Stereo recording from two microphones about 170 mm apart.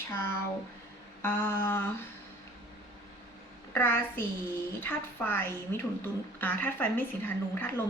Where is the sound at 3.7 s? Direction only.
15° left (ahead or behind).